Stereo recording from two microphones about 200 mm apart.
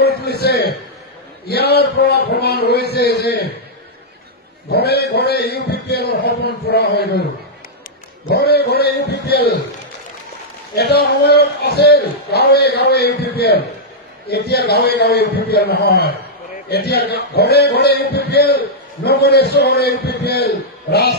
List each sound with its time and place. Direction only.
0.0 s a sound: 55° left (ahead or behind)
4.6 s a man's voice: 55° left (ahead or behind)
8.3 s a man's voice: 50° left (ahead or behind)
10.7 s a man's voice: 55° left (ahead or behind)